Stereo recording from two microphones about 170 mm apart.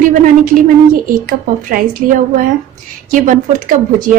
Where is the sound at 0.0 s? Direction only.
50° right (ahead or behind).